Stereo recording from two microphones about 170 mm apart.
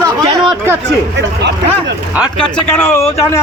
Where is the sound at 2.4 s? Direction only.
10° left (ahead or behind).